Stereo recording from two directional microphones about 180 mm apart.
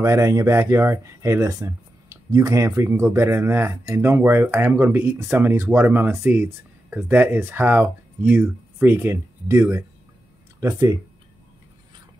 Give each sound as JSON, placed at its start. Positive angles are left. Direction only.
{"t": 0.0, "sound": "speech", "side_deg": -15}